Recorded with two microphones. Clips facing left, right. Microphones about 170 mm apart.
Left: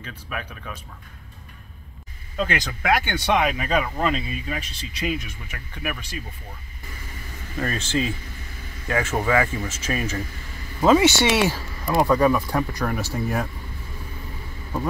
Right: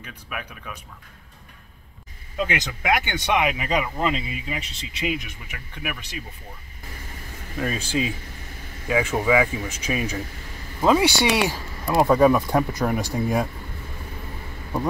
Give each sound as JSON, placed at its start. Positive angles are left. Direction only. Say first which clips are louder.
{"t": 0.0, "sound": "speech", "louder": "left 2 dB", "side_deg": -10}
{"t": 2.3, "sound": "speech", "louder": "left 1 dB", "side_deg": -15}
{"t": 7.5, "sound": "speech", "louder": "even", "side_deg": -5}